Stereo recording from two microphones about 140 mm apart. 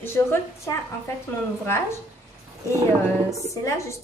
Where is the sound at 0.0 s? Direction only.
15° left (ahead or behind).